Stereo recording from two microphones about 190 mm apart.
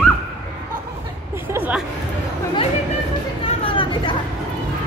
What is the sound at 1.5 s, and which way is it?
Music, 10° right (ahead or behind).